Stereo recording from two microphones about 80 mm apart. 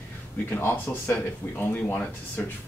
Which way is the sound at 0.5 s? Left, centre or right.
Left.